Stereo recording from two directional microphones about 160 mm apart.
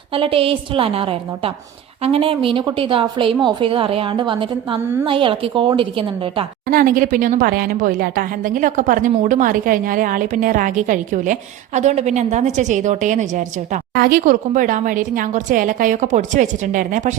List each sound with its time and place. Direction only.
0.1 s a woman's voice: 35° right (ahead or behind)
6.7 s speech: 65° right (ahead or behind)
13.9 s speech: 70° right (ahead or behind); by 17.2 s 55° right (ahead or behind)